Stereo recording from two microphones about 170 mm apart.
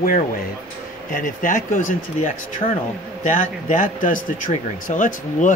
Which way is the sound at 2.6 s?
30° left (ahead or behind).